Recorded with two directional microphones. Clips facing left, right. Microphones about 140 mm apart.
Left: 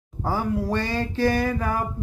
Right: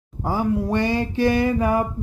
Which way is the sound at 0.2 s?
15° right (ahead or behind).